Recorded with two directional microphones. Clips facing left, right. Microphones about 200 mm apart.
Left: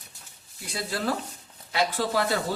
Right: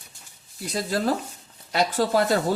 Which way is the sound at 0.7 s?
40° right (ahead or behind).